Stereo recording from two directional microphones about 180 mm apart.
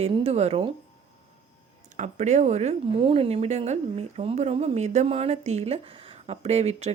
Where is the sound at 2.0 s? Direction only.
40° right (ahead or behind).